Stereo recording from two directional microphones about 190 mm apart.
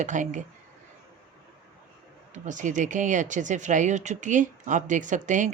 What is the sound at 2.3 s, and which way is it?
Speech, 40° right (ahead or behind).